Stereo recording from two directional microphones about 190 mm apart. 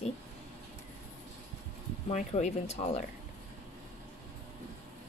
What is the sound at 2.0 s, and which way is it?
A woman's voice, 35° left (ahead or behind).